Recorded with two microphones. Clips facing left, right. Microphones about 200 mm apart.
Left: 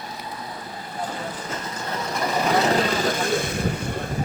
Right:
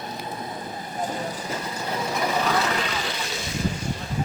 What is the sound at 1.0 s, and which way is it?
Vehicle, 10° right (ahead or behind).